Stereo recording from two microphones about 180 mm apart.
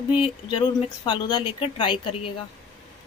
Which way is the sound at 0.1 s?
30° left (ahead or behind).